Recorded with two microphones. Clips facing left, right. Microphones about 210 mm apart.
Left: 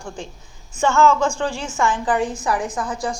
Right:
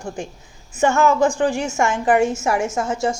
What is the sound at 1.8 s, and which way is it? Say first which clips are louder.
A woman's voice: right 3 dB; 25° right (ahead or behind).